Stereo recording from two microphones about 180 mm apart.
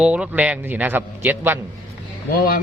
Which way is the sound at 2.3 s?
50° left (ahead or behind).